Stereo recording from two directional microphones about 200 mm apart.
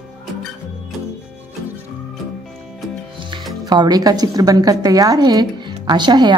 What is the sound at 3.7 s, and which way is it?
A woman's voice, 20° right (ahead or behind).